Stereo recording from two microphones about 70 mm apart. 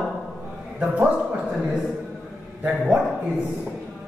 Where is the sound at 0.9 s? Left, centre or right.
Centre.